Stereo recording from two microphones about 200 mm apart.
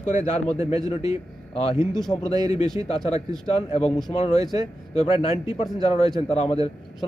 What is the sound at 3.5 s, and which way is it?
Speech, 30° left (ahead or behind).